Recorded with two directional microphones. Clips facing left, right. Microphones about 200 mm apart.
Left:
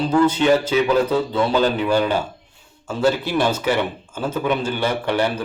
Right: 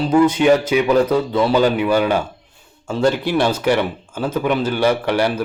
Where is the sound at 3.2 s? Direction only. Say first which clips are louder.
Right 3 dB; 10° right (ahead or behind).